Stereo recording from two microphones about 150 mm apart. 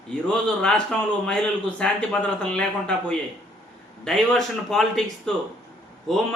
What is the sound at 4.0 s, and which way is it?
A man's voice, centre (ahead or behind).